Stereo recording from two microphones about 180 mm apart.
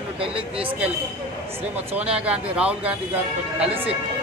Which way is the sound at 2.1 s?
5° right (ahead or behind).